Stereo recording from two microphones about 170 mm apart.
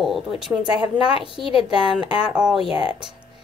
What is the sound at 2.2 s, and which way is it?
Speech, 5° right (ahead or behind).